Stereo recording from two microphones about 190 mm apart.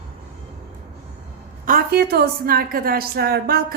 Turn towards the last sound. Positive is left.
turn(degrees=-55)  # may be behind; listen again after turning